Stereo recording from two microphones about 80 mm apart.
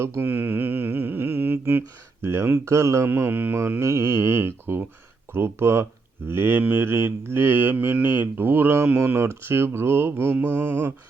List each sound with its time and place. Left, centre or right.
0.0 s speech: right
3.1 s speech: right